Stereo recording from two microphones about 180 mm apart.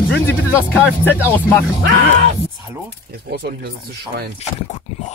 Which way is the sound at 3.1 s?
65° right (ahead or behind).